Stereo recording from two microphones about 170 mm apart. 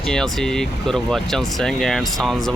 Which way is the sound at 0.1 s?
5° left (ahead or behind).